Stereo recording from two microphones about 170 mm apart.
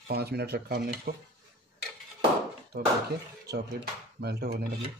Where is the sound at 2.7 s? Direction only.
70° right (ahead or behind).